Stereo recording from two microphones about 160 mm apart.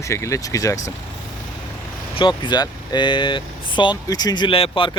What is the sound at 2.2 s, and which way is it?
Speech, 30° left (ahead or behind).